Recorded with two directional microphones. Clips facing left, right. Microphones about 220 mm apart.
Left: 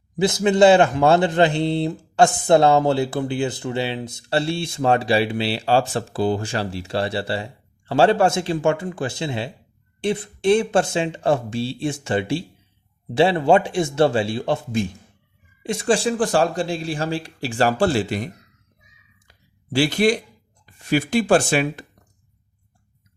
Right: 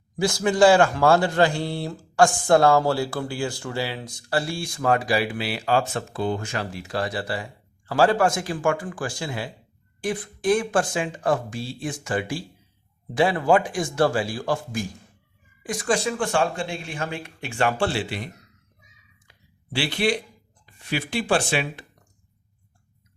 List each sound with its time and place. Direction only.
0.2 s speech: 20° left (ahead or behind); by 18.3 s 45° left (ahead or behind)
19.3 s a sound: 45° left (ahead or behind)
20.8 s speech: 45° left (ahead or behind)